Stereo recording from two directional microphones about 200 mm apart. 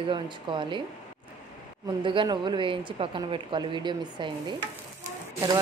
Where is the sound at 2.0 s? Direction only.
25° right (ahead or behind).